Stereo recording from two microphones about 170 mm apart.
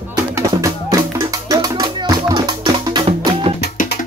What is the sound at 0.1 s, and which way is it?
Music, 20° right (ahead or behind).